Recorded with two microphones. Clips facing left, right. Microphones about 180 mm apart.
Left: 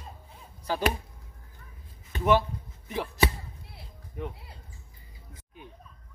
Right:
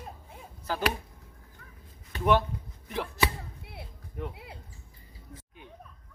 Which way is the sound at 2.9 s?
15° left (ahead or behind).